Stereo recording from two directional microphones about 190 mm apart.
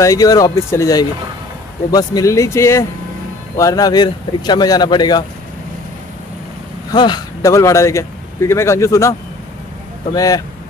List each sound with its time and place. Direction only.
0.0 s speech: 20° left (ahead or behind)
6.9 s speech: 20° left (ahead or behind)
10.1 s speech: 20° left (ahead or behind)